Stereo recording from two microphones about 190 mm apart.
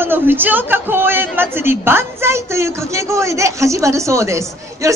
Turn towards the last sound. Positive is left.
turn(degrees=-15)  # may be behind; listen again after turning